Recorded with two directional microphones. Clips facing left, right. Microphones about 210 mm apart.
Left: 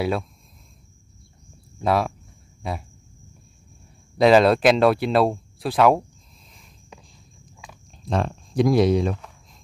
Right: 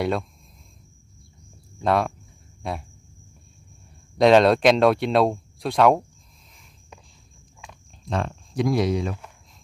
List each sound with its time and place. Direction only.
0.0 s speech: 5° left (ahead or behind)
1.8 s speech: 5° left (ahead or behind)
4.2 s speech: centre (ahead or behind)
8.1 s speech: 35° left (ahead or behind)